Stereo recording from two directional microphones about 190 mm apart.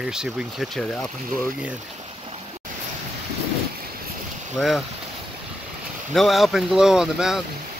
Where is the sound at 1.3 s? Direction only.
45° right (ahead or behind).